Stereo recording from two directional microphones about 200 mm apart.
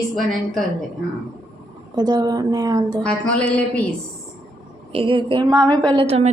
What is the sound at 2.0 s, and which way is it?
A woman's voice, 20° right (ahead or behind).